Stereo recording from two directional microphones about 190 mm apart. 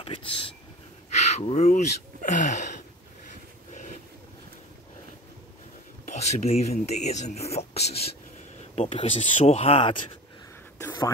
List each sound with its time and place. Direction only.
0.0 s speech: 30° left (ahead or behind)
1.1 s a sound: 35° left (ahead or behind)
2.2 s speech: 40° left (ahead or behind)
6.0 s speech: 35° left (ahead or behind)
10.8 s whispering: 20° left (ahead or behind)